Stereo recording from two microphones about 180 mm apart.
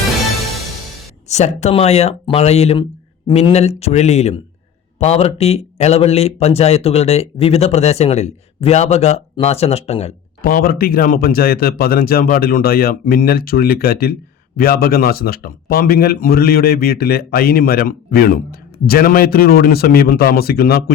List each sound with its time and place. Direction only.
1.3 s speech: 40° left (ahead or behind)
10.4 s speech: 55° left (ahead or behind)